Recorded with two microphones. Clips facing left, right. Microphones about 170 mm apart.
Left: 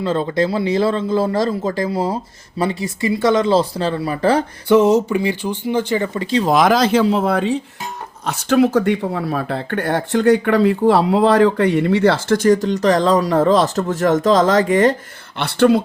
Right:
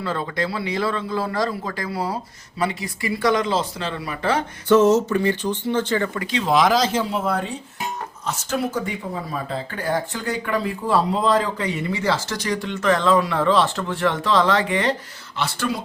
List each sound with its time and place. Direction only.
0.0 s a man's voice: 25° left (ahead or behind)
4.7 s speech: 10° left (ahead or behind)
6.1 s speech: 40° left (ahead or behind)
15.4 s speech: 65° left (ahead or behind)